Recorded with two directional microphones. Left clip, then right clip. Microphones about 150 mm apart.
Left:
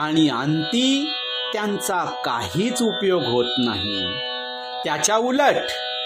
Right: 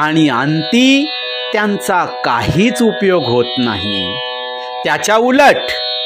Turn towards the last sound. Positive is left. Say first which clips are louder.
# right 9 dB
turn(degrees=-30)  # may be behind; listen again after turning